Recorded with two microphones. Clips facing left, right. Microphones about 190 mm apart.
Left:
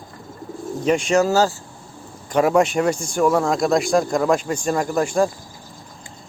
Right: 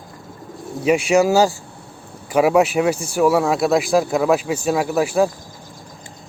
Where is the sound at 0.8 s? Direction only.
10° right (ahead or behind).